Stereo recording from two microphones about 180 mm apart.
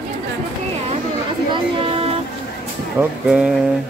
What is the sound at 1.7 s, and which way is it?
Music, 30° right (ahead or behind).